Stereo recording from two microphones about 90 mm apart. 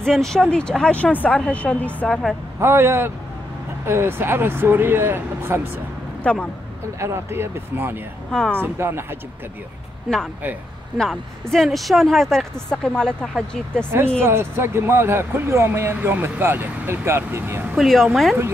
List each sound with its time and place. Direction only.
0.0 s speech: 5° left (ahead or behind)
2.6 s speech: 25° right (ahead or behind)
6.2 s speech: 15° left (ahead or behind)
7.0 s speech: 30° right (ahead or behind)
8.3 s speech: 5° left (ahead or behind)
8.5 s speech: 25° right (ahead or behind)
10.1 s speech: centre (ahead or behind)
14.2 s speech: 25° right (ahead or behind)
17.7 s speech: centre (ahead or behind)